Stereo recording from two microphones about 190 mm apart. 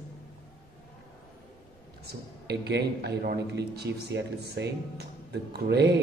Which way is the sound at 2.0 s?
60° right (ahead or behind).